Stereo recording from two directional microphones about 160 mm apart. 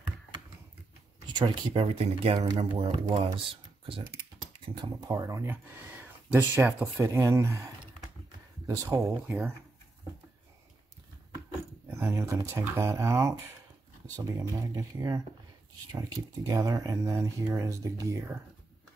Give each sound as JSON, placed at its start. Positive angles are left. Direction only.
{"t": 1.2, "sound": "speech", "side_deg": -30}
{"t": 3.1, "sound": "speech", "side_deg": -25}
{"t": 4.8, "sound": "speech", "side_deg": -20}
{"t": 8.6, "sound": "speech", "side_deg": -20}
{"t": 11.9, "sound": "speech", "side_deg": -15}